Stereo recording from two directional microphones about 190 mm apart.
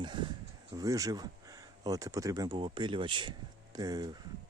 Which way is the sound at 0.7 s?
20° right (ahead or behind).